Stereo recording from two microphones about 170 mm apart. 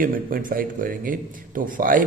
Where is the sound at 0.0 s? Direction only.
55° right (ahead or behind).